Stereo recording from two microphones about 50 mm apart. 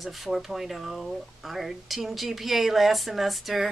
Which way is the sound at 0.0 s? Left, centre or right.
Centre.